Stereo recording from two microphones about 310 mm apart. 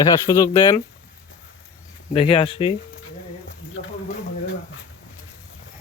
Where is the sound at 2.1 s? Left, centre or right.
Centre.